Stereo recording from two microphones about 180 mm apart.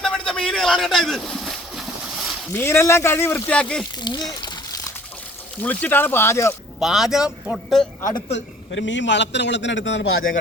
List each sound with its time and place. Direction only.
0.0 s a sound: 5° left (ahead or behind)
2.5 s speech: 15° left (ahead or behind)
4.0 s crumpling: 20° left (ahead or behind)
5.6 s speech: 10° left (ahead or behind)
6.7 s a man's voice: centre (ahead or behind)
8.3 s a man's voice: 85° left